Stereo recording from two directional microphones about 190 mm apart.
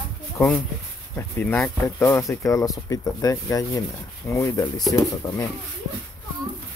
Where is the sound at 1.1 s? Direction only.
5° left (ahead or behind).